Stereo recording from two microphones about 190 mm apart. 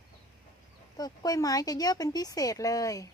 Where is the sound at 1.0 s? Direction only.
20° left (ahead or behind).